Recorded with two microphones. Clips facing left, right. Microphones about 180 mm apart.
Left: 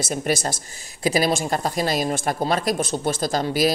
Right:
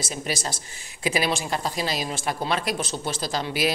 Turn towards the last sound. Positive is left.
turn(degrees=45)  # may be behind; listen again after turning